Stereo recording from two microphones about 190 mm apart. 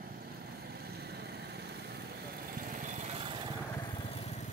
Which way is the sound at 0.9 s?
55° right (ahead or behind).